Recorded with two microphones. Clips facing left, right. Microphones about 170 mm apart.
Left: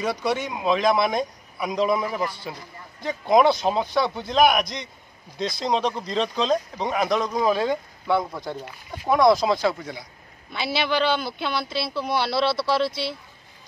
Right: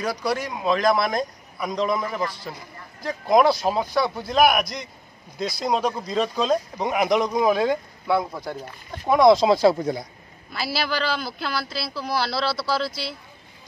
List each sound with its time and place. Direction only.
0.0 s speech: centre (ahead or behind)
9.1 s speech: 20° right (ahead or behind); by 10.0 s 35° right (ahead or behind)
10.5 s speech: centre (ahead or behind)